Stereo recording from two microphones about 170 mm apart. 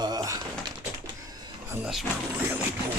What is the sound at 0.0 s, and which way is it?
Door, 20° right (ahead or behind).